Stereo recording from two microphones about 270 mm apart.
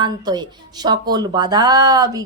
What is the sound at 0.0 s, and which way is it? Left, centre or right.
A woman's voice, centre.